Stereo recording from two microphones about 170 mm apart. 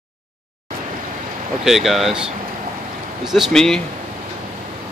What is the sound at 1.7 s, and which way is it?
Speech, centre (ahead or behind).